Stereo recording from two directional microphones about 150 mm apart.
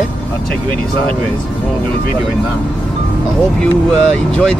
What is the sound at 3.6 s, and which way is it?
Speech, 5° left (ahead or behind).